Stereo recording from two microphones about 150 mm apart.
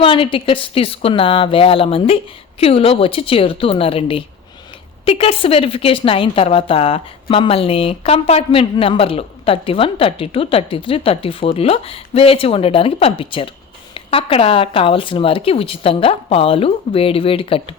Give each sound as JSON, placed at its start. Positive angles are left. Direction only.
{"t": 0.0, "sound": "a woman's voice", "side_deg": 35}